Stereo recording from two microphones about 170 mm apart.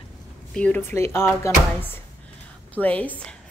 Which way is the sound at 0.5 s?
10° left (ahead or behind).